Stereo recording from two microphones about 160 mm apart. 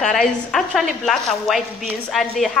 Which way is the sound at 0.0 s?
Centre (ahead or behind).